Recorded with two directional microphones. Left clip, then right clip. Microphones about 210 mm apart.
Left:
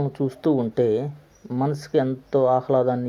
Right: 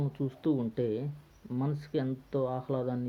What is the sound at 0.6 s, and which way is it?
Speech, 10° right (ahead or behind).